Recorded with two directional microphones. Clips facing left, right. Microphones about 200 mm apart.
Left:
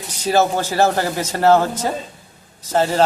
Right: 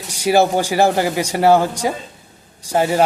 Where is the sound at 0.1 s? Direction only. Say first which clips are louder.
Right 3 dB; 10° right (ahead or behind).